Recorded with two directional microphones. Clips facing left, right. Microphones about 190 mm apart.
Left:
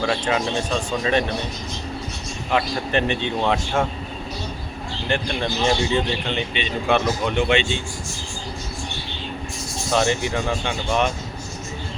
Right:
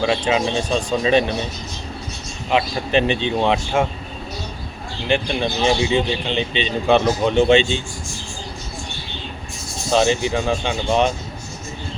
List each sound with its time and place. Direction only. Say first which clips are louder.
0.0 s a man's voice: right 3 dB; 20° right (ahead or behind)
2.5 s a man's voice: right 3 dB; 20° right (ahead or behind)
5.0 s a man's voice: right 4 dB; 15° right (ahead or behind)
9.9 s a man's voice: right 4 dB; 25° right (ahead or behind)